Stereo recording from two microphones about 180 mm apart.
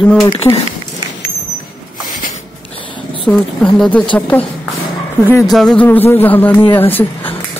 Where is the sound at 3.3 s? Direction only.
5° left (ahead or behind).